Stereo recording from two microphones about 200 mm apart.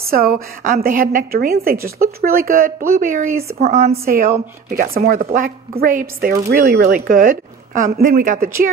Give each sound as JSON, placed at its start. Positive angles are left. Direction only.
{"t": 0.0, "sound": "a woman's voice", "side_deg": -45}
{"t": 4.6, "sound": "a woman's voice", "side_deg": -45}